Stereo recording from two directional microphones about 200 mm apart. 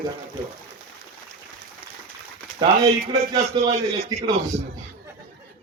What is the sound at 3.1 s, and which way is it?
Speech, 20° right (ahead or behind).